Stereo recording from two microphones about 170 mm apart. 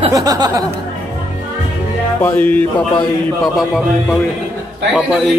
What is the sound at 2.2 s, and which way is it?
A man's voice, 10° left (ahead or behind).